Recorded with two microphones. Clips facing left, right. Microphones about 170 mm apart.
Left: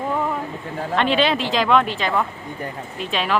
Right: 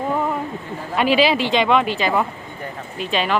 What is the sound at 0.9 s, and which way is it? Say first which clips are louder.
Speech: right 2 dB; 5° right (ahead or behind).